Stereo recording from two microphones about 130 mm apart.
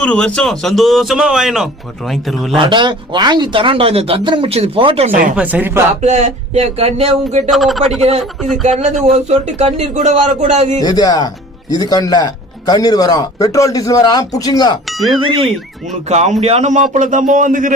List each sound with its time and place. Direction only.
0.0 s speech: 10° left (ahead or behind)
2.6 s speech: 35° right (ahead or behind)
5.3 s speech: 10° right (ahead or behind)
6.0 s speech: 65° right (ahead or behind)
7.5 s speech: centre (ahead or behind)
8.6 s speech: 60° right (ahead or behind)
10.8 s speech: 30° left (ahead or behind)
14.8 s speech: centre (ahead or behind)
15.3 s speech: 45° right (ahead or behind)
16.0 s speech: 60° right (ahead or behind); by 17.7 s 90° right